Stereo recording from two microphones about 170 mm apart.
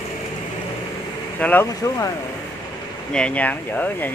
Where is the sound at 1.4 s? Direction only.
10° left (ahead or behind).